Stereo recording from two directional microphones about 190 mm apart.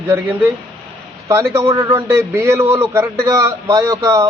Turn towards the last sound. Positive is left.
turn(degrees=-15)  # may be behind; listen again after turning